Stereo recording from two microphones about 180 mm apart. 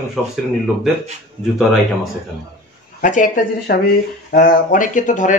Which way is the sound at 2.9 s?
45° left (ahead or behind).